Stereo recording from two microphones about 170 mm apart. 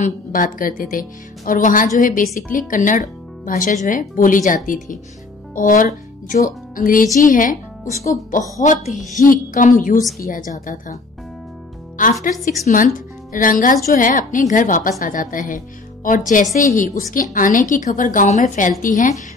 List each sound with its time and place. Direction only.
0.0 s a woman's voice: 50° left (ahead or behind)
12.0 s a woman's voice: 50° left (ahead or behind)